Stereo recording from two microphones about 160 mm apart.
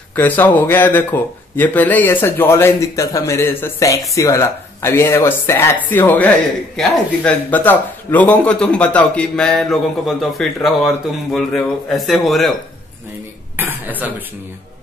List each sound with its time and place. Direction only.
0.1 s speech: 10° left (ahead or behind)
13.6 s speech: 10° right (ahead or behind)